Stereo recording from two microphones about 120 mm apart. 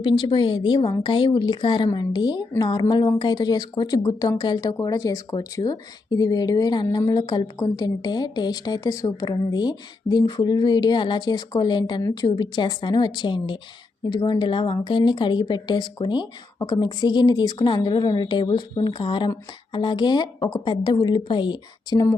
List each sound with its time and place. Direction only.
0.0 s speech: 45° left (ahead or behind)